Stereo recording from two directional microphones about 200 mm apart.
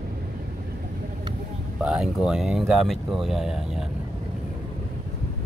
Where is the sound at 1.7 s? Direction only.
5° right (ahead or behind).